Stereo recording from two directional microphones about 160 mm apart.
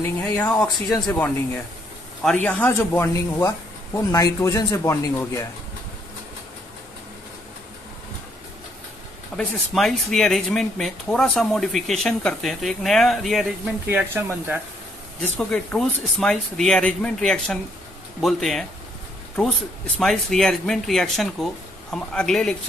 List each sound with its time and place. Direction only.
0.0 s speech: 10° left (ahead or behind)
9.4 s speech: centre (ahead or behind)
13.8 s speech: 15° right (ahead or behind)
15.3 s speech: 5° left (ahead or behind)
20.0 s speech: 5° left (ahead or behind)